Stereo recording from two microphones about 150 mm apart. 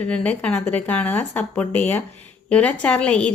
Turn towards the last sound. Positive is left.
turn(degrees=5)  # may be behind; listen again after turning